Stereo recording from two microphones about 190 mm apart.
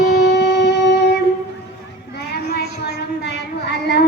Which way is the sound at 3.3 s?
60° left (ahead or behind).